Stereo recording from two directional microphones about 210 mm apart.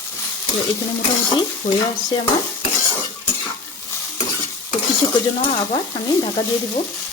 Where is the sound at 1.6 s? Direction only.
40° left (ahead or behind).